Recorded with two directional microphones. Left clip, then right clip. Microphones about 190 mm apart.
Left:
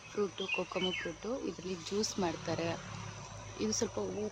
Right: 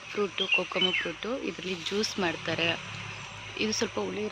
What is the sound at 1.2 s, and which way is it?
Speech, 5° right (ahead or behind).